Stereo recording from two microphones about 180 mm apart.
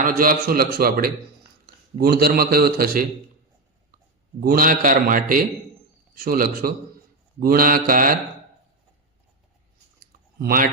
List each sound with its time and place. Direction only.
0.0 s a man's voice: 50° right (ahead or behind)
4.4 s a man's voice: 55° right (ahead or behind)
10.0 s clicking: 55° right (ahead or behind)